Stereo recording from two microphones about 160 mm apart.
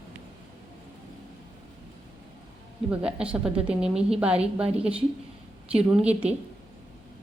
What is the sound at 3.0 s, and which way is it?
A woman's voice, 5° right (ahead or behind).